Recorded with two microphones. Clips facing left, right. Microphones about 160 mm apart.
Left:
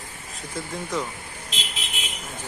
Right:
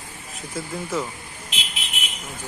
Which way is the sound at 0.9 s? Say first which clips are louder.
Right 2 dB; 5° right (ahead or behind).